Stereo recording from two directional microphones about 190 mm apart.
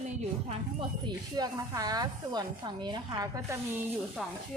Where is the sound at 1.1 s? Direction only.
20° right (ahead or behind).